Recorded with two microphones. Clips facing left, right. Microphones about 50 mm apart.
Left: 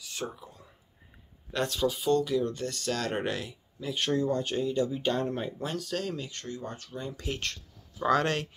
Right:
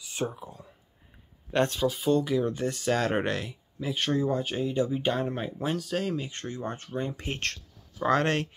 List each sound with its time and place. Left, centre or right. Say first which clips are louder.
0.1 s speech: right 5 dB; right
1.5 s speech: right 5 dB; right
1.8 s speech: right 1 dB; centre
2.1 s speech: right 1 dB; centre
3.3 s speech: right 2 dB; centre; by 5.1 s right
5.1 s speech: even; centre
6.3 s speech: right 3 dB; right